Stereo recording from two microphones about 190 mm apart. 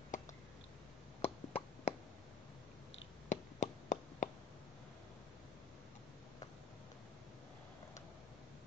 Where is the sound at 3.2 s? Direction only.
40° left (ahead or behind).